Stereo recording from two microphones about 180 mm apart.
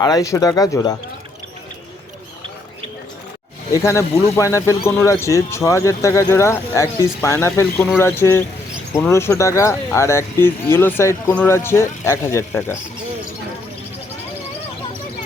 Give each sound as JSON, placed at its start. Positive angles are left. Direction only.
{"t": 0.0, "sound": "speech", "side_deg": 20}
{"t": 3.7, "sound": "speech", "side_deg": 15}